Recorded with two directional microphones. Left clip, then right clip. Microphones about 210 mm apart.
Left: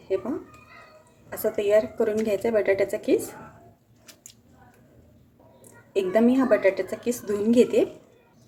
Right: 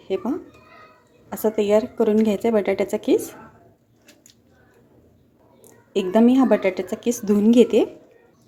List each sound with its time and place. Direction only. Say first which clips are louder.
1.3 s speech: right 3 dB; 35° right (ahead or behind)
5.9 s speech: right 3 dB; 35° right (ahead or behind)